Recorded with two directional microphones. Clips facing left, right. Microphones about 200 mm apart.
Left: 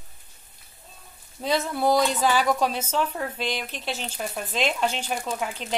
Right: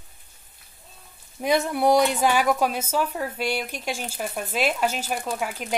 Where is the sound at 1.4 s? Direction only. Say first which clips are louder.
Right 3 dB; 15° right (ahead or behind).